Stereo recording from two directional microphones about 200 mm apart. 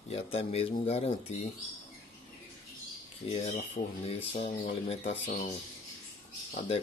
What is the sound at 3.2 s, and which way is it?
Speech, 30° left (ahead or behind).